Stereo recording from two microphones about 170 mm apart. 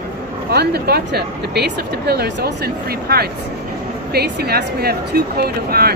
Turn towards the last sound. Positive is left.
turn(degrees=-65)  # may be behind; listen again after turning